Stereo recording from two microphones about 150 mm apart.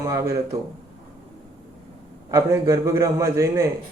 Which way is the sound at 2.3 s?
20° right (ahead or behind).